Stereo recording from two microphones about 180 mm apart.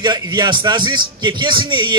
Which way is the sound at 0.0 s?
25° right (ahead or behind).